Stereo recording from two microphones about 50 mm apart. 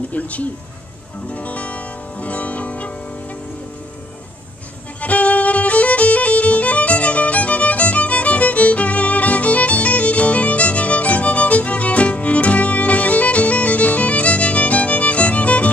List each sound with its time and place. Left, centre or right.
0.1 s speech: left
1.3 s music: left
5.0 s violin: left